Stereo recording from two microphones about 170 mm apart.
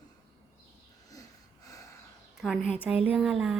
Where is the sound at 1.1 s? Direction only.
20° left (ahead or behind).